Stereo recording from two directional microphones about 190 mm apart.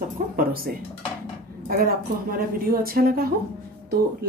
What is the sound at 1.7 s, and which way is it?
Speech, 50° right (ahead or behind).